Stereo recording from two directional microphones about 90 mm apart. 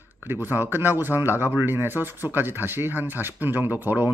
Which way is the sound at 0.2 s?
25° right (ahead or behind).